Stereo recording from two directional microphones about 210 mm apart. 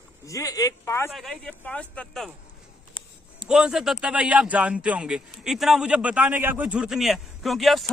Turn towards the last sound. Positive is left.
turn(degrees=0)  # may be behind; listen again after turning